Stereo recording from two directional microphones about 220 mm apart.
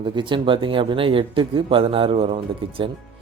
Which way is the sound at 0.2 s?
20° right (ahead or behind).